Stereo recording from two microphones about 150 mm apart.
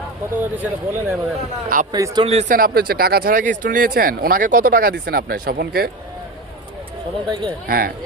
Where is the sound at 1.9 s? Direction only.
30° right (ahead or behind).